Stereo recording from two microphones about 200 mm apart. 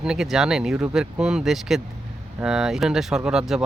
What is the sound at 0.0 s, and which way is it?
Speech, 5° right (ahead or behind).